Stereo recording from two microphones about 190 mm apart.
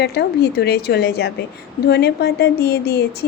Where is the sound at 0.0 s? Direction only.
60° left (ahead or behind).